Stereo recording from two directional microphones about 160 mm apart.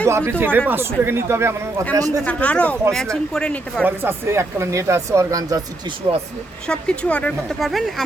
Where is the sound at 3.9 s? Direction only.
15° right (ahead or behind).